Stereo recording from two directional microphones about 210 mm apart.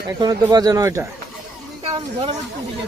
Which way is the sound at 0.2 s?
20° right (ahead or behind).